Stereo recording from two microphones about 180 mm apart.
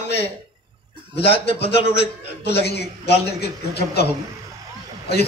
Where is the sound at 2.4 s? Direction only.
65° left (ahead or behind).